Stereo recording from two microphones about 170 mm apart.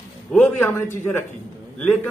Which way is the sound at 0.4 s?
15° left (ahead or behind).